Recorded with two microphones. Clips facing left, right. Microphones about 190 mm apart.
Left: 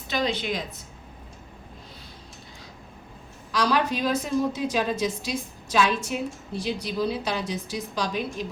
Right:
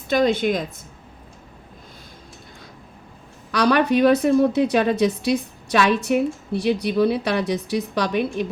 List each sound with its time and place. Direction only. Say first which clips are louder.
0.1 s a woman's voice: right 8 dB; 50° right (ahead or behind)
3.5 s a woman's voice: right 7 dB; 65° right (ahead or behind)